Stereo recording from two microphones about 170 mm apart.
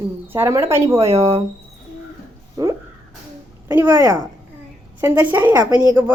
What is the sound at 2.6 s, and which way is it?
Speech, 20° right (ahead or behind).